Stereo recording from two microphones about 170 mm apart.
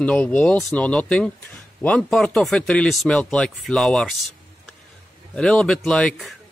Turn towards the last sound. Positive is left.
turn(degrees=0)  # may be behind; listen again after turning